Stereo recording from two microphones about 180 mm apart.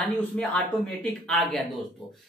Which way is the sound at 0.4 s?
5° left (ahead or behind).